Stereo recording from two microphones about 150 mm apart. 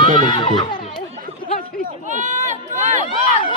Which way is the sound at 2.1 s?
55° right (ahead or behind).